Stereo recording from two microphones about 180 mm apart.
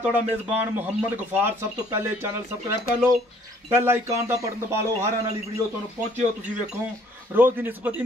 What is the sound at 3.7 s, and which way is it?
Speech, 15° right (ahead or behind).